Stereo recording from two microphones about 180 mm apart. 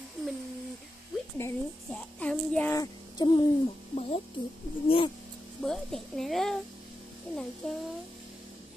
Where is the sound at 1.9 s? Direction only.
5° left (ahead or behind).